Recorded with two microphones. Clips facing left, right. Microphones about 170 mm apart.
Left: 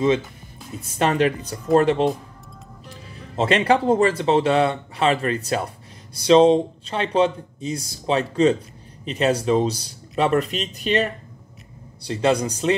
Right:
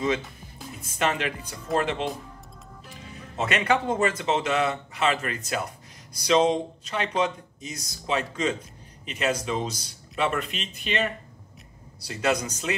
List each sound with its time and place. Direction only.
0.9 s speech: 35° left (ahead or behind)
3.3 s speech: 30° left (ahead or behind)
12.1 s speech: 30° left (ahead or behind)